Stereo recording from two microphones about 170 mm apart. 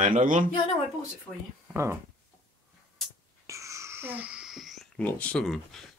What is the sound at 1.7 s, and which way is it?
Speech, 15° right (ahead or behind).